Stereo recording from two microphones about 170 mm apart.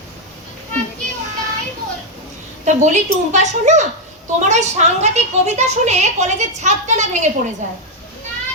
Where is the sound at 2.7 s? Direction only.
45° right (ahead or behind).